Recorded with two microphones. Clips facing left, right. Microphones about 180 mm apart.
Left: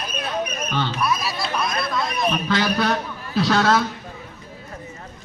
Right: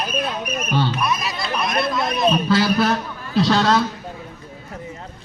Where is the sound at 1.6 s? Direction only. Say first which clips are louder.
Right 5 dB; 20° right (ahead or behind).